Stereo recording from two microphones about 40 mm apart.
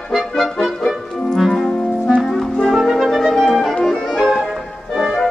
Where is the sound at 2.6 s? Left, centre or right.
Centre.